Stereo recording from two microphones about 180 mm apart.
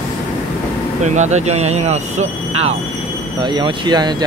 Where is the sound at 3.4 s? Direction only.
25° right (ahead or behind).